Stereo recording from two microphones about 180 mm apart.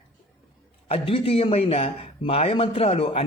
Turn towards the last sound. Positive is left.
turn(degrees=35)  # may be behind; listen again after turning